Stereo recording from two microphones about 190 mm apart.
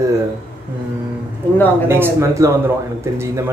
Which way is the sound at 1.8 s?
15° right (ahead or behind).